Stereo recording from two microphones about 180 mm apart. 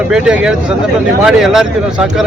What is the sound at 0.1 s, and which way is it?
A man's voice, 5° right (ahead or behind).